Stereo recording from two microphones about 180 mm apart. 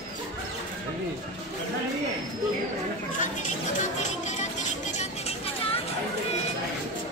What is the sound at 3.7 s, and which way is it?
Music, 40° left (ahead or behind).